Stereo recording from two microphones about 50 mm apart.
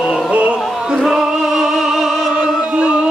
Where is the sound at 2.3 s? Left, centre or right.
Centre.